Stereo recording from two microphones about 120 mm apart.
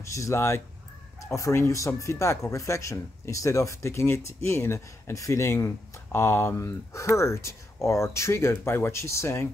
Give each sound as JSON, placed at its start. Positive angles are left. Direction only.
{"t": 0.0, "sound": "speech", "side_deg": 25}